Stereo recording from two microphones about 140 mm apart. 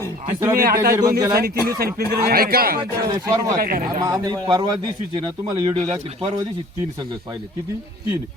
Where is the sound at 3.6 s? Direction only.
90° right.